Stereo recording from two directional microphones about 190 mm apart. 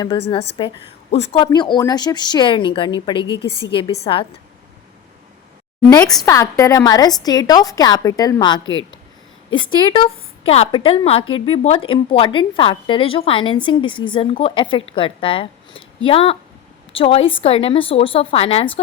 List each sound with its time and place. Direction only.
0.0 s a woman's voice: 25° left (ahead or behind)
6.2 s a woman's voice: 15° left (ahead or behind)
9.9 s a woman's voice: 30° left (ahead or behind)